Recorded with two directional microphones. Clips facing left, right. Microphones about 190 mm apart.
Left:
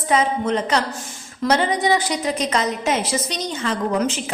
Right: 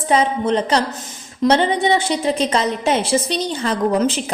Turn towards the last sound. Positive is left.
turn(degrees=-35)  # may be behind; listen again after turning